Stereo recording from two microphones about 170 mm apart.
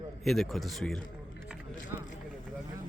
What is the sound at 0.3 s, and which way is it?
Speech, centre (ahead or behind).